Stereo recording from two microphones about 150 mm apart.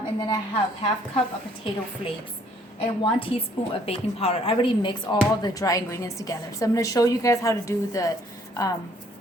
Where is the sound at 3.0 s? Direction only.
35° left (ahead or behind).